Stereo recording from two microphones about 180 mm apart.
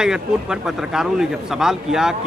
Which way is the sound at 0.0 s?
5° right (ahead or behind).